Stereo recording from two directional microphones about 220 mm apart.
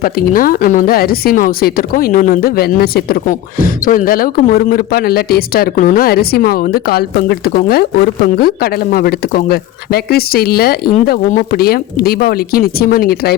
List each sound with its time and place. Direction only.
0.0 s speech: 40° left (ahead or behind)